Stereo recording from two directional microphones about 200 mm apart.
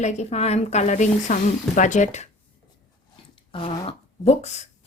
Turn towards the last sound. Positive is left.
turn(degrees=35)  # may be behind; listen again after turning